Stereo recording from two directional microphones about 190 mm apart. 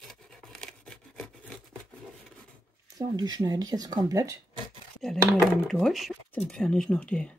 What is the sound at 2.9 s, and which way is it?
Speech, 20° right (ahead or behind).